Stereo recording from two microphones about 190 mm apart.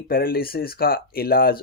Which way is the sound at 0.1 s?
50° left (ahead or behind).